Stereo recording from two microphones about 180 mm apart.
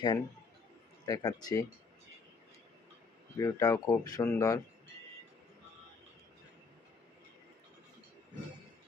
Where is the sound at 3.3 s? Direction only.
20° left (ahead or behind).